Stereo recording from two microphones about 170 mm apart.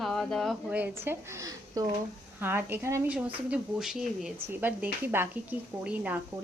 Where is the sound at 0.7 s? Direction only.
10° right (ahead or behind).